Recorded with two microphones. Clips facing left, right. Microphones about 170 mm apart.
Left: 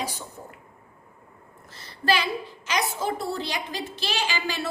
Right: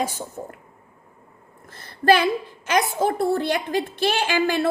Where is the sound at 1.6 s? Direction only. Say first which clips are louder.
Right 7 dB; 50° right (ahead or behind).